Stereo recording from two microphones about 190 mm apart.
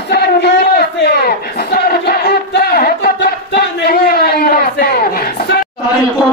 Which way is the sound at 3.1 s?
60° left (ahead or behind).